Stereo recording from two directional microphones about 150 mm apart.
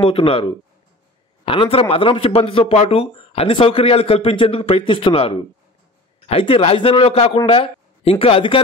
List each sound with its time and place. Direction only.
0.0 s speech: 35° left (ahead or behind)